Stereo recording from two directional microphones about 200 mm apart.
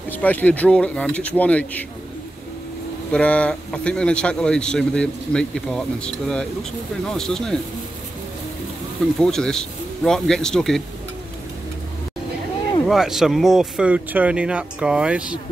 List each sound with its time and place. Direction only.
0.1 s speech: 10° left (ahead or behind)
3.1 s speech: 5° left (ahead or behind)
9.2 s speech: 5° left (ahead or behind)
12.8 s speech: centre (ahead or behind)